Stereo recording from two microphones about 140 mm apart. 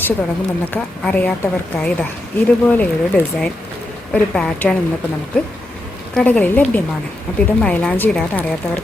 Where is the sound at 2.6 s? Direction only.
10° left (ahead or behind).